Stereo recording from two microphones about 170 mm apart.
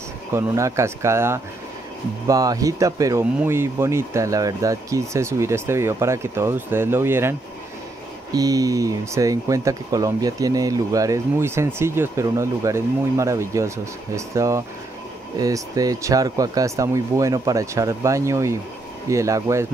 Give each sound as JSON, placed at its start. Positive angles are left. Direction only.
{"t": 0.3, "sound": "speech", "side_deg": -15}